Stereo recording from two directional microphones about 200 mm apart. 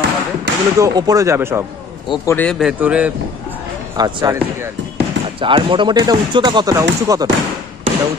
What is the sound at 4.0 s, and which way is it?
Speech, 20° right (ahead or behind).